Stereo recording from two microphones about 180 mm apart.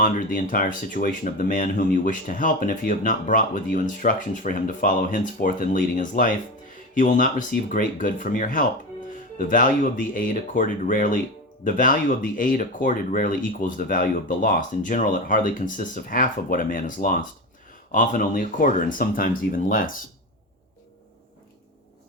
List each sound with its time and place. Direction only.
0.0 s speech: 50° left (ahead or behind)